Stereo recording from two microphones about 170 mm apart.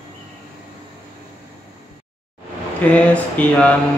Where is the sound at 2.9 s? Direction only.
10° left (ahead or behind).